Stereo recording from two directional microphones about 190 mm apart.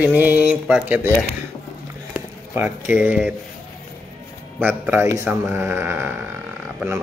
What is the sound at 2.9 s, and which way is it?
Mantra, 10° right (ahead or behind).